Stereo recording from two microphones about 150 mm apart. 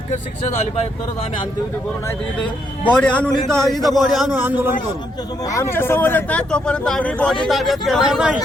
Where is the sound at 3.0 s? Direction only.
10° left (ahead or behind).